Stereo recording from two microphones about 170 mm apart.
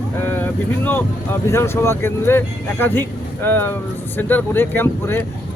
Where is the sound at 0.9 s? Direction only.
15° left (ahead or behind).